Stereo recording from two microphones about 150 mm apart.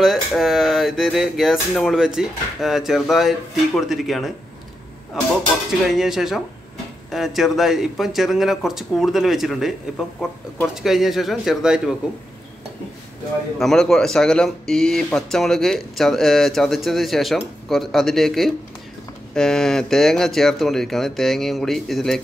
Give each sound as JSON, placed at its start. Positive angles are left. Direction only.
{"t": 0.0, "sound": "speech", "side_deg": 0}
{"t": 5.9, "sound": "speech", "side_deg": 0}
{"t": 13.6, "sound": "speech", "side_deg": 0}